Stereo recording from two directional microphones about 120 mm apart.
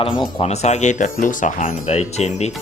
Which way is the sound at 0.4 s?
70° left (ahead or behind).